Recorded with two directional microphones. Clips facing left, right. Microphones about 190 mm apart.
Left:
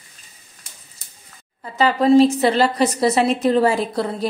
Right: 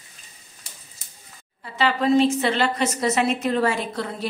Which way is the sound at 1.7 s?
40° left (ahead or behind).